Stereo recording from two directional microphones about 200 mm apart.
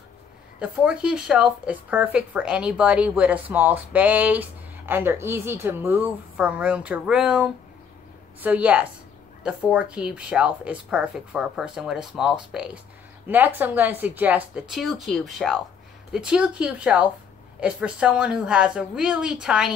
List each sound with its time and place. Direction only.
0.6 s speech: 5° right (ahead or behind)